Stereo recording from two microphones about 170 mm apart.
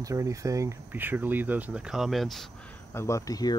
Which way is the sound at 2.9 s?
15° left (ahead or behind).